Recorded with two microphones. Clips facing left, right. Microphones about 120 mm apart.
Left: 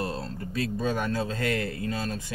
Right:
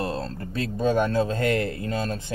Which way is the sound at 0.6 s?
30° right (ahead or behind).